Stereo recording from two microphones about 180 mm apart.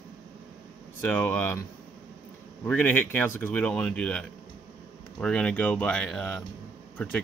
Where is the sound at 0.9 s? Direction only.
10° left (ahead or behind).